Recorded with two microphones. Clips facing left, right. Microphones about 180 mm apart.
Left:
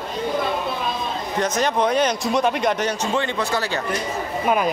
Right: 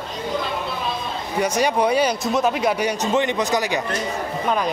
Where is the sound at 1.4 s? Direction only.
10° right (ahead or behind).